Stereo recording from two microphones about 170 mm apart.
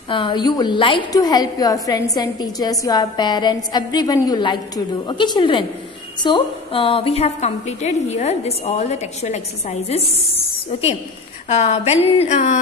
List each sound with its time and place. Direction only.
0.1 s a woman's voice: 30° left (ahead or behind); by 12.5 s 45° left (ahead or behind)